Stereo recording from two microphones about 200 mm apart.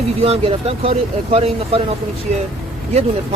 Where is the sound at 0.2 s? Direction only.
30° right (ahead or behind).